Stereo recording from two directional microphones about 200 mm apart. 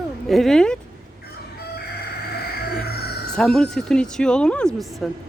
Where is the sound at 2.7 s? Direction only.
50° left (ahead or behind).